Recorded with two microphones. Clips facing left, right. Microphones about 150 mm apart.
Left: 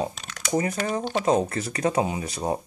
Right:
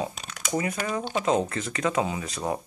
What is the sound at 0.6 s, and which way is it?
Speech, 35° left (ahead or behind).